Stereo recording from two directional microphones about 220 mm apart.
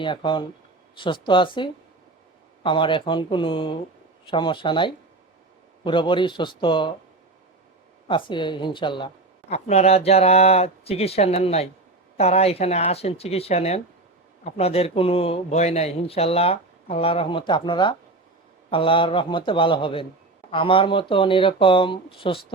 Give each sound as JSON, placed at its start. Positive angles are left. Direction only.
{"t": 0.0, "sound": "speech", "side_deg": 20}
{"t": 8.0, "sound": "speech", "side_deg": 20}